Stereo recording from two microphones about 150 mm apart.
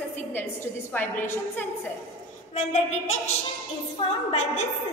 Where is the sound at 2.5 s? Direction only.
50° left (ahead or behind).